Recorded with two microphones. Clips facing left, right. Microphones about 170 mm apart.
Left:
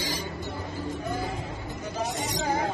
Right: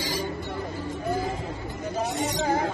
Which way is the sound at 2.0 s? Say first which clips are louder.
Right 3 dB; 65° right (ahead or behind).